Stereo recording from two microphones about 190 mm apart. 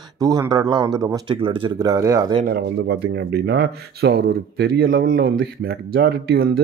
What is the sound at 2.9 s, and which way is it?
Speech, 65° right (ahead or behind).